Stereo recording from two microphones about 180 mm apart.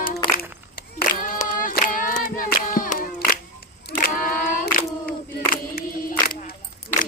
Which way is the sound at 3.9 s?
50° left (ahead or behind).